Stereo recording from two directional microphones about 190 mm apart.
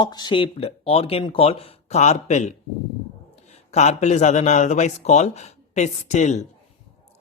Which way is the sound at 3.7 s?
35° left (ahead or behind).